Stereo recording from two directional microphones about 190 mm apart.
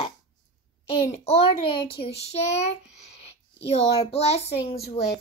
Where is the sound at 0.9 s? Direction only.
35° left (ahead or behind).